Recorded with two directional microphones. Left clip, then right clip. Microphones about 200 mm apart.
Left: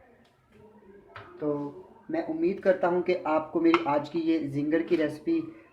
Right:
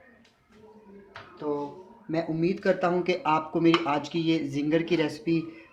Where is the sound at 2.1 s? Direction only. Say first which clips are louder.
Right 1 dB; 40° right (ahead or behind).